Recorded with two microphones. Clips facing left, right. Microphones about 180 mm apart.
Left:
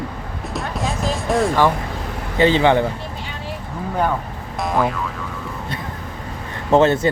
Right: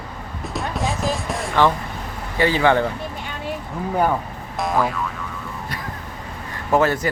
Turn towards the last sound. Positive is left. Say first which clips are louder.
# left 4 dB
turn(degrees=25)  # may be behind; listen again after turning